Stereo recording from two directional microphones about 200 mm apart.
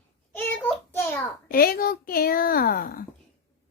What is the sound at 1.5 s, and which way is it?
Speech, 45° left (ahead or behind).